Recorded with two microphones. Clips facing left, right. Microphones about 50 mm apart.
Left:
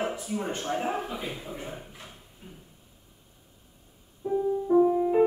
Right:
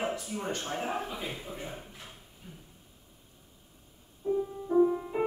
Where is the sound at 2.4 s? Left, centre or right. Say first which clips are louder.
Left 2 dB; left.